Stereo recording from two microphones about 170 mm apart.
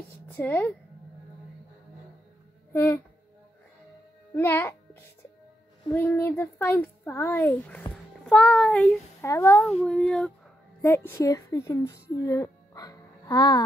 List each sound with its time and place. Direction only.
0.4 s a child's voice: 10° left (ahead or behind)
2.7 s speech: 10° left (ahead or behind)
4.3 s a child's voice: 10° left (ahead or behind)
5.9 s a child's voice: 15° left (ahead or behind)
9.2 s a child's voice: 15° left (ahead or behind)
9.7 s child singing: centre (ahead or behind)
10.8 s a child's voice: 15° left (ahead or behind)